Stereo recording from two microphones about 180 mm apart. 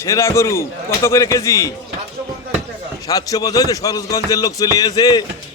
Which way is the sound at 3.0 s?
20° left (ahead or behind).